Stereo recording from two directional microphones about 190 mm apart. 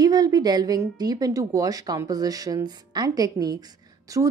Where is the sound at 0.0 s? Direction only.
20° right (ahead or behind).